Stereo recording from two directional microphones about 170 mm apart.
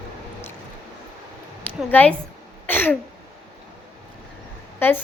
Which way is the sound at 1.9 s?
10° left (ahead or behind).